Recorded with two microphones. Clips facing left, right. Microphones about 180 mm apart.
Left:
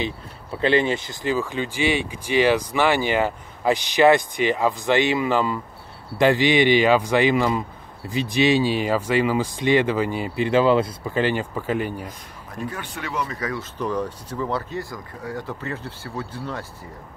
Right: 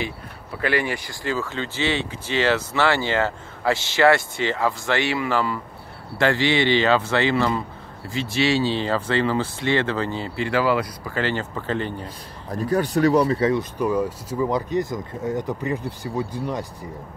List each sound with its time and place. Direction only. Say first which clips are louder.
0.6 s speech: left 4 dB; 25° left (ahead or behind)
12.4 s speech: right 9 dB; 35° right (ahead or behind)
13.6 s speech: right 4 dB; 10° right (ahead or behind)